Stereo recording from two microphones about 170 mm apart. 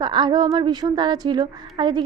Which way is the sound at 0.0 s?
25° right (ahead or behind).